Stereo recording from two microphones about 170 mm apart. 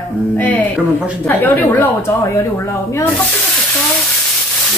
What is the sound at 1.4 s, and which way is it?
Speech, 10° left (ahead or behind).